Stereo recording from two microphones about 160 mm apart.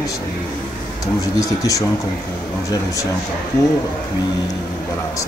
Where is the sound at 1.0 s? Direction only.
20° left (ahead or behind).